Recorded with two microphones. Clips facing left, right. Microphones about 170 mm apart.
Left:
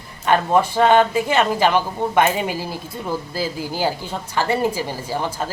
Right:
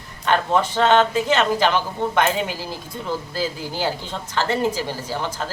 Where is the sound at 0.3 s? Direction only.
10° left (ahead or behind).